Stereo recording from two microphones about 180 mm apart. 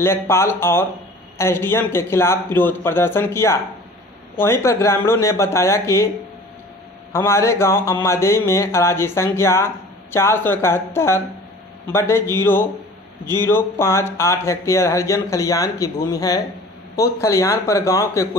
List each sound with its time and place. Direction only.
0.0 s speech: 15° left (ahead or behind)
7.1 s speech: 15° left (ahead or behind)